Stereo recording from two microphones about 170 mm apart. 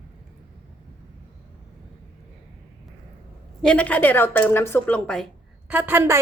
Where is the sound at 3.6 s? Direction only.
5° left (ahead or behind).